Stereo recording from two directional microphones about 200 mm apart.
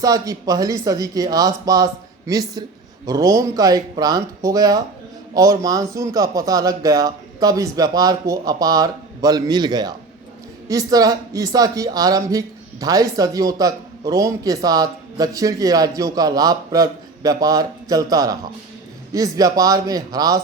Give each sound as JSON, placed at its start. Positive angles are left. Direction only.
{"t": 0.0, "sound": "speech", "side_deg": -15}